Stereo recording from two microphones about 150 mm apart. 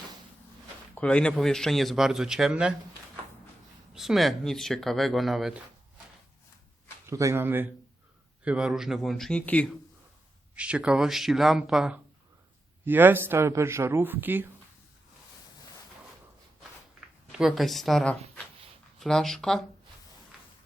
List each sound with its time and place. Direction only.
0.9 s speech: 10° left (ahead or behind)
3.9 s speech: centre (ahead or behind)
7.1 s speech: 20° right (ahead or behind); by 9.7 s 10° left (ahead or behind)
10.5 s speech: 10° right (ahead or behind)
17.3 s speech: centre (ahead or behind)
20.3 s a sound: centre (ahead or behind)